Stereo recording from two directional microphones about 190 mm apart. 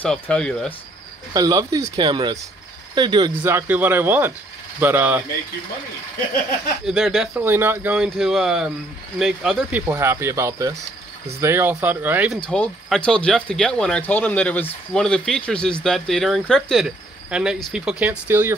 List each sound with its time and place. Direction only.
0.0 s speech: 5° left (ahead or behind)
1.3 s speech: 20° right (ahead or behind)
6.9 s speech: centre (ahead or behind)
12.4 s speech: 5° left (ahead or behind)